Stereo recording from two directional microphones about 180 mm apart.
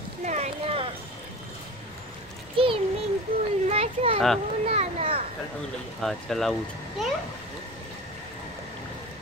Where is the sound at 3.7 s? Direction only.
35° right (ahead or behind).